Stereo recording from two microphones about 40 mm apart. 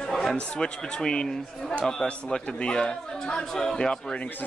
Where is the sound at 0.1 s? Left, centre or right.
Centre.